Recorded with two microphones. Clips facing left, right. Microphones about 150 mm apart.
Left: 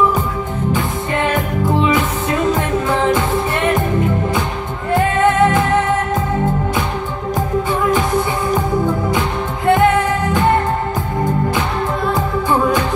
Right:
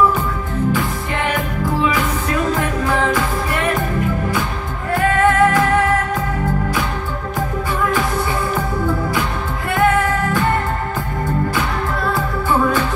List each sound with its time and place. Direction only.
1.3 s music: 25° left (ahead or behind)
9.7 s music: 20° left (ahead or behind)
12.1 s music: 15° left (ahead or behind)